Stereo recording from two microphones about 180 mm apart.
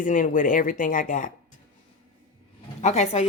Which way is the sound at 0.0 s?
45° left (ahead or behind).